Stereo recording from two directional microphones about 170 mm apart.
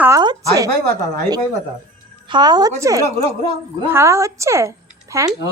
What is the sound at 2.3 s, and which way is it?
A woman's voice, 25° right (ahead or behind).